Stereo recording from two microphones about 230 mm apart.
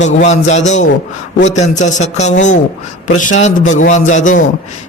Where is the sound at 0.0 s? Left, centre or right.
Left.